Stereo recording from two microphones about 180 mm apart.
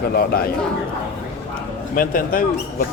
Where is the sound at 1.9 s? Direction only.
50° left (ahead or behind).